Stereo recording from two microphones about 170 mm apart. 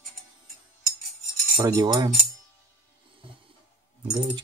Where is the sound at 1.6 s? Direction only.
25° right (ahead or behind).